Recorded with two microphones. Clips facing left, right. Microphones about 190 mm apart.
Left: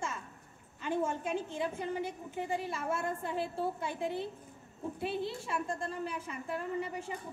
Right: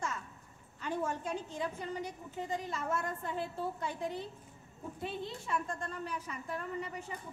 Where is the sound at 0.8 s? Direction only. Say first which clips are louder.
Left 3 dB; 25° left (ahead or behind).